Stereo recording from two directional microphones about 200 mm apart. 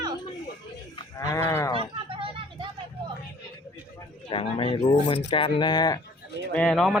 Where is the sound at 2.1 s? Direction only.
25° right (ahead or behind).